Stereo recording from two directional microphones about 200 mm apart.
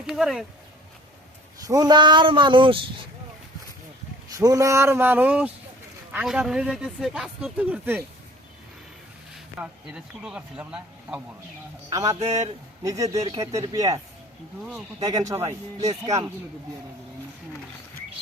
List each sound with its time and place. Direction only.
0.1 s speech: centre (ahead or behind)
1.5 s speech: 15° right (ahead or behind)
4.3 s speech: 15° right (ahead or behind)
9.3 s speech: 5° right (ahead or behind)
11.9 s speech: 15° right (ahead or behind)
15.0 s speech: 15° right (ahead or behind)